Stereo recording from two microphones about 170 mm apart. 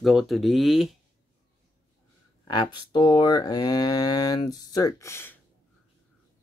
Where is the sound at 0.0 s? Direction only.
Centre (ahead or behind).